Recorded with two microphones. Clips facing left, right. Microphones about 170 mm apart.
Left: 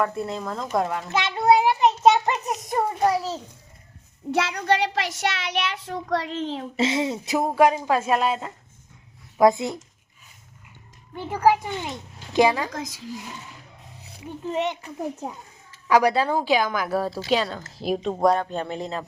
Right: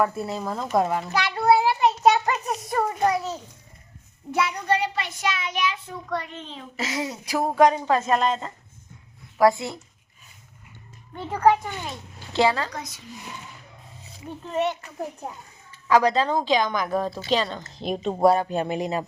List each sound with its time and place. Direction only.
0.0 s speech: 5° right (ahead or behind)
1.1 s child singing: 20° left (ahead or behind)
4.3 s a child's voice: 85° left
6.7 s speech: 25° left (ahead or behind)
7.5 s speech: 10° left (ahead or behind)
9.4 s speech: 20° left (ahead or behind)
11.1 s a woman's voice: 5° left (ahead or behind)
12.7 s a child's voice: 90° left
14.5 s speech: 15° left (ahead or behind); by 19.0 s 15° right (ahead or behind)